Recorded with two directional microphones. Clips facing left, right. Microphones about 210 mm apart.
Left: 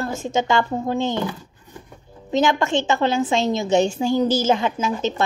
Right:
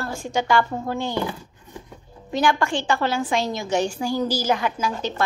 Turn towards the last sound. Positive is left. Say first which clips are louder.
# left 3 dB
turn(degrees=20)  # may be behind; listen again after turning